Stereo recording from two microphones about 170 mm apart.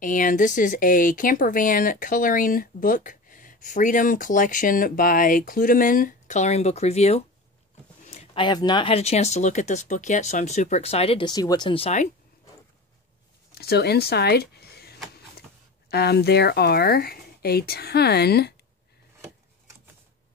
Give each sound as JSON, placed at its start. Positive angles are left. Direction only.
{"t": 0.0, "sound": "speech", "side_deg": 50}
{"t": 8.0, "sound": "a sound", "side_deg": 40}
{"t": 8.4, "sound": "speech", "side_deg": 25}
{"t": 13.6, "sound": "speech", "side_deg": 70}